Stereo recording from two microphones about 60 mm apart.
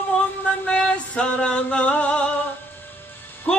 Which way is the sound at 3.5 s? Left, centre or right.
Left.